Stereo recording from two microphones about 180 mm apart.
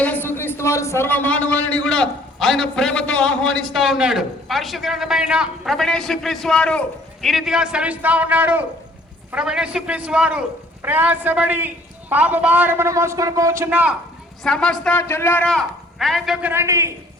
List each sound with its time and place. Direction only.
0.0 s a sound: 10° left (ahead or behind)
3.7 s a man's voice: centre (ahead or behind)
14.4 s a man's voice: 5° left (ahead or behind); by 16.9 s 15° right (ahead or behind)